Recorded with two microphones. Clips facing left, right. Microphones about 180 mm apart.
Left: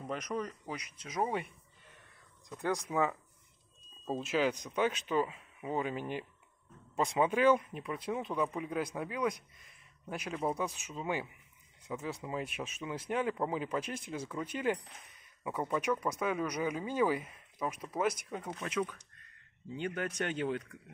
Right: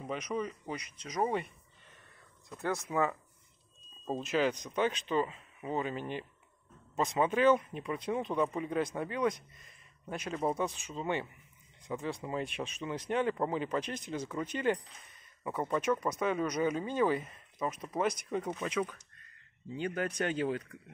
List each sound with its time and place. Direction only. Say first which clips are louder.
0.0 s speech: right 1 dB; centre (ahead or behind); by 3.1 s 15° left (ahead or behind)
4.2 s speech: right 1 dB; 5° left (ahead or behind)
19.8 s a man's voice: right 2 dB; 40° right (ahead or behind)